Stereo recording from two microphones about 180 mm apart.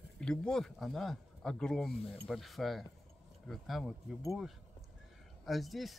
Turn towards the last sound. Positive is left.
turn(degrees=0)  # may be behind; listen again after turning